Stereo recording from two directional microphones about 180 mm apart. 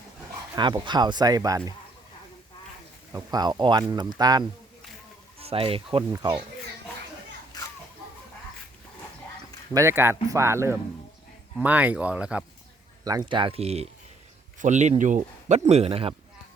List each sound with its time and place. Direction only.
0.5 s speech: 25° right (ahead or behind)
3.1 s speech: 20° right (ahead or behind)
5.4 s speech: 30° right (ahead or behind)
6.1 s speech: 20° right (ahead or behind)
9.7 s speech: 15° right (ahead or behind)
13.1 s speech: 25° right (ahead or behind)